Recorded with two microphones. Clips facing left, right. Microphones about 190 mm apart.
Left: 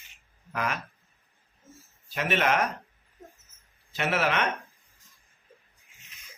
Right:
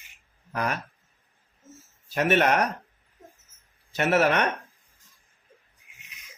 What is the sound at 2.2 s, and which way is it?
Speech, 45° right (ahead or behind).